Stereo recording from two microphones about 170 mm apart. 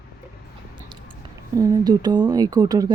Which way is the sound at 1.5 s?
20° right (ahead or behind).